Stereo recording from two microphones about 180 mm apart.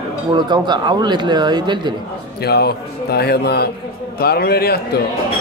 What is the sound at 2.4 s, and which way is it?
A man's voice, 60° left (ahead or behind).